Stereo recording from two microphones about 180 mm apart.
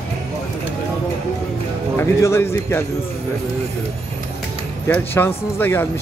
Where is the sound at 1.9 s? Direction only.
15° left (ahead or behind).